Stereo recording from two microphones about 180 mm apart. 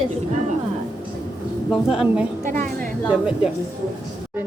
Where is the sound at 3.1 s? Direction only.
5° right (ahead or behind).